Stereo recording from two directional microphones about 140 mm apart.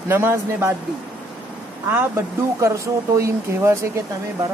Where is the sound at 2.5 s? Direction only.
20° right (ahead or behind).